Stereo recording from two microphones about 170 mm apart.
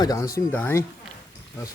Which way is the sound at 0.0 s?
20° left (ahead or behind).